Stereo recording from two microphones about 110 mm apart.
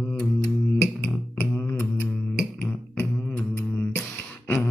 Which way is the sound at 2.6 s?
10° left (ahead or behind).